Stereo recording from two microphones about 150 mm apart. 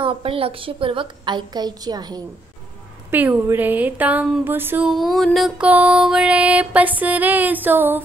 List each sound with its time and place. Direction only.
0.0 s a woman's voice: 35° right (ahead or behind)
3.1 s music: 15° right (ahead or behind)
4.8 s a sound: centre (ahead or behind)
5.7 s music: 10° right (ahead or behind)